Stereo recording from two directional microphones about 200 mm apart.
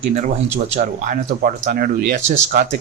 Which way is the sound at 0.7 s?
40° right (ahead or behind).